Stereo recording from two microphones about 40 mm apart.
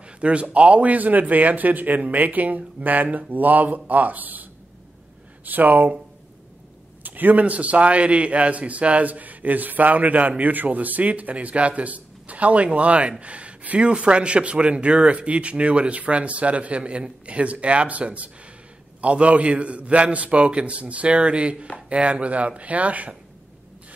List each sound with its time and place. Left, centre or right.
0.2 s speech: right
7.0 s a sound: right
7.4 s a man's voice: right